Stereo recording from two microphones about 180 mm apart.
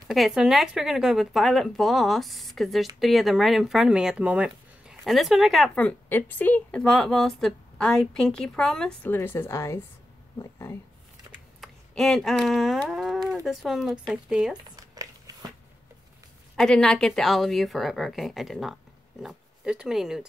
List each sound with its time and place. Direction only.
0.1 s speech: centre (ahead or behind); by 10.8 s 15° left (ahead or behind)
11.6 s speech: centre (ahead or behind)
14.8 s a sound: 20° right (ahead or behind)
16.5 s speech: 5° left (ahead or behind)